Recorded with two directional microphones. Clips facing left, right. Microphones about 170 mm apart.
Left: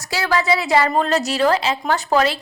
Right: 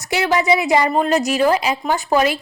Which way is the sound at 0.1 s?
20° right (ahead or behind).